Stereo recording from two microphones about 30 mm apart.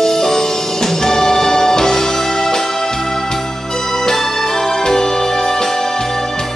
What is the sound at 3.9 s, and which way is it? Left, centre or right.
Music, centre.